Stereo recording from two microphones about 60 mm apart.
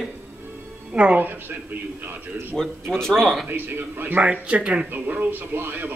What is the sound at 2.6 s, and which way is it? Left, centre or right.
Speech, centre.